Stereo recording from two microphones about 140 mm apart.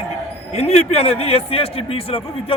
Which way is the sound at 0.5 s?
50° left (ahead or behind).